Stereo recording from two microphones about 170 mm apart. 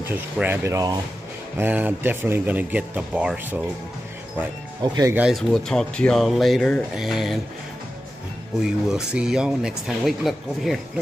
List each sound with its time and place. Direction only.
0.0 s speech: 10° right (ahead or behind)
4.8 s speech: 25° right (ahead or behind)
5.1 s speech: 5° right (ahead or behind)
8.6 s speech: 5° right (ahead or behind)